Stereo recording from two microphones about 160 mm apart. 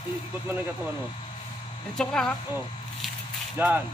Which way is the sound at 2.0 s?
5° left (ahead or behind).